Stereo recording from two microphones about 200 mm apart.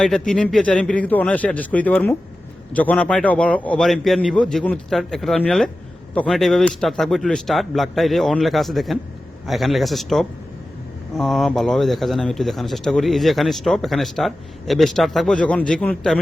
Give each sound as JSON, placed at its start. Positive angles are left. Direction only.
{"t": 0.0, "sound": "speech", "side_deg": 5}